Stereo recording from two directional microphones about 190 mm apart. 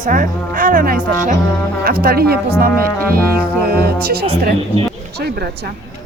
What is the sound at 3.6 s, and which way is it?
Speech, 55° right (ahead or behind).